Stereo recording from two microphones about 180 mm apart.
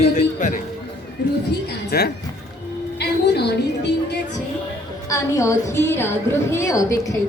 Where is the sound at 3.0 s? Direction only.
65° left (ahead or behind).